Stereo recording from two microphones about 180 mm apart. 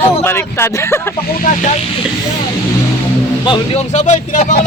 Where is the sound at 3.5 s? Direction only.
40° left (ahead or behind).